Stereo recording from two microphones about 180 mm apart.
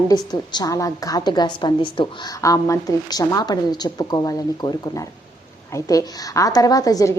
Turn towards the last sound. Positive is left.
turn(degrees=20)  # may be behind; listen again after turning